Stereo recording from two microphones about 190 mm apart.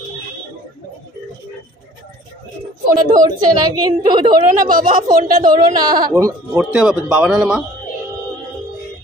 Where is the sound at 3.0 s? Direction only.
20° right (ahead or behind).